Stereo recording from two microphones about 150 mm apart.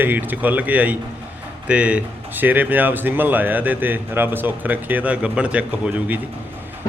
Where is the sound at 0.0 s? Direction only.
10° right (ahead or behind).